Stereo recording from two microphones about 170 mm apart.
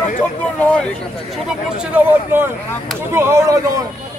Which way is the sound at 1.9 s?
10° right (ahead or behind).